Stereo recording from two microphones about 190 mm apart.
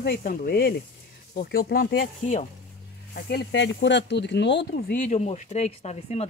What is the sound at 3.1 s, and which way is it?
Speech, 60° left (ahead or behind).